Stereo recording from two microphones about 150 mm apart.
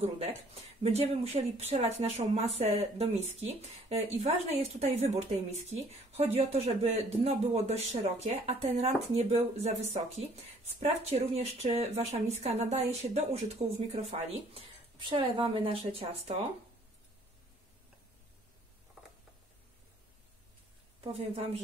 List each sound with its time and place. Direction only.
0.8 s speech: 45° right (ahead or behind)
14.3 s speech: 35° right (ahead or behind)
19.0 s a sound: centre (ahead or behind)
21.0 s speech: 40° right (ahead or behind)